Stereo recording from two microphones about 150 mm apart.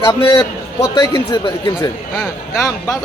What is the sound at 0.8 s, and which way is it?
Speech, 20° left (ahead or behind).